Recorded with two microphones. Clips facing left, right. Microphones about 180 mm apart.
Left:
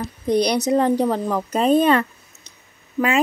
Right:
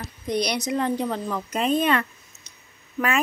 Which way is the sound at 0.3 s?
35° left (ahead or behind).